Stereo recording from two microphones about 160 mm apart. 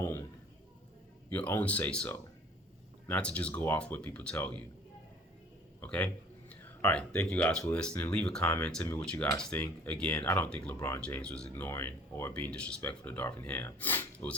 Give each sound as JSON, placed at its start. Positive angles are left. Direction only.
{"t": 0.0, "sound": "a sound", "side_deg": 15}
{"t": 1.3, "sound": "speech", "side_deg": 10}
{"t": 5.8, "sound": "speech", "side_deg": 10}